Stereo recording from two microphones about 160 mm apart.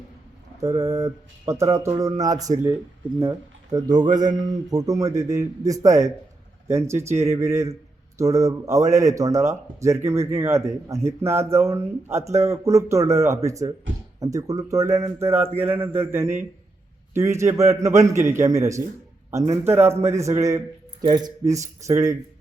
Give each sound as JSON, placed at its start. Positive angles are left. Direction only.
{"t": 0.8, "sound": "speech", "side_deg": -20}